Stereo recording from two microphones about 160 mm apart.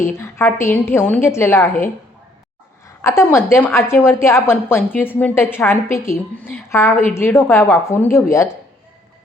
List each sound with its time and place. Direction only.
0.1 s a woman's voice: 15° left (ahead or behind)
2.8 s a woman's voice: 20° left (ahead or behind)